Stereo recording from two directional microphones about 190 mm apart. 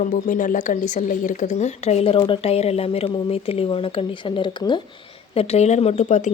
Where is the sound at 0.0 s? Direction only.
40° left (ahead or behind).